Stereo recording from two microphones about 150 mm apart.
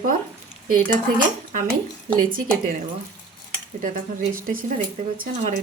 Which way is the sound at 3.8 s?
65° right (ahead or behind).